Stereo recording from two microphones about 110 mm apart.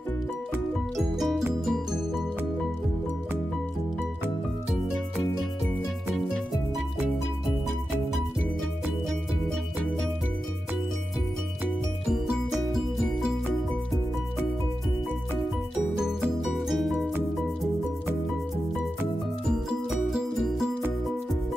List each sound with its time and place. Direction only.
0.9 s music: centre (ahead or behind)
12.1 s music: 5° right (ahead or behind)
16.0 s music: 5° right (ahead or behind)
20.1 s music: 5° right (ahead or behind)